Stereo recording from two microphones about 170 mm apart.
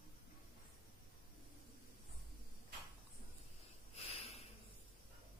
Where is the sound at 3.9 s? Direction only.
35° left (ahead or behind).